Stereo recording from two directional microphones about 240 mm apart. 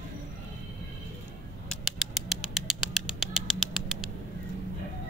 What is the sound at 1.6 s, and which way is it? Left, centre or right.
Bird, centre.